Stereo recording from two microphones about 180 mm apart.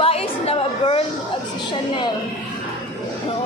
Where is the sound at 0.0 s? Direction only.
35° left (ahead or behind).